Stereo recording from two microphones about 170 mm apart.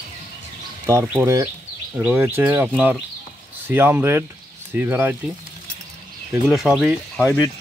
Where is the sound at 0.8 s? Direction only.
15° right (ahead or behind).